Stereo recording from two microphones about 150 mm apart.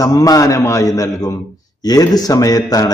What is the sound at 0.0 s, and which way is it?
A man's voice, 20° left (ahead or behind).